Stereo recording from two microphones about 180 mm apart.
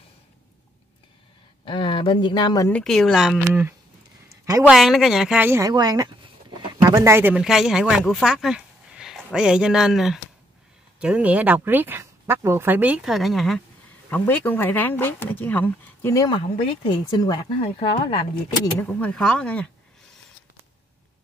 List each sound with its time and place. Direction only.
1.6 s speech: 30° left (ahead or behind)
2.7 s speech: 5° left (ahead or behind)
4.3 s a sound: 20° right (ahead or behind)
4.6 s speech: centre (ahead or behind); by 18.2 s 25° left (ahead or behind)
18.8 s speech: 10° left (ahead or behind)